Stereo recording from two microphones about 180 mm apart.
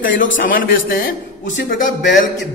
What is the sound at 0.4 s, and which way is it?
Speech, 50° left (ahead or behind).